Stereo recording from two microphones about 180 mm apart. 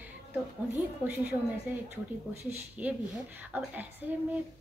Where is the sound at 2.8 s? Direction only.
10° right (ahead or behind).